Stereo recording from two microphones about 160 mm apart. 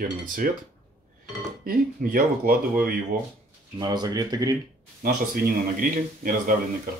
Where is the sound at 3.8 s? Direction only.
25° right (ahead or behind).